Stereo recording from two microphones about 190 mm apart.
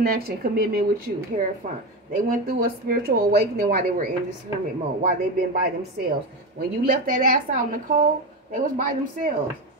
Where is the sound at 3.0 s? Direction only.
55° right (ahead or behind).